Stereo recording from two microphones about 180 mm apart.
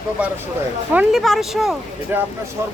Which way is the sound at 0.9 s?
Centre (ahead or behind).